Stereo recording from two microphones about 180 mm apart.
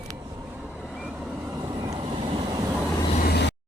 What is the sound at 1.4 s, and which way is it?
Train, 15° right (ahead or behind).